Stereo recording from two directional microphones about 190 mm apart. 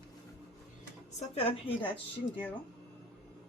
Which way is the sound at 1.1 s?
30° left (ahead or behind).